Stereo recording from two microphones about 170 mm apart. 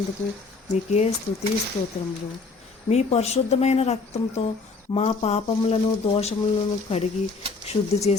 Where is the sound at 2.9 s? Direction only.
40° left (ahead or behind).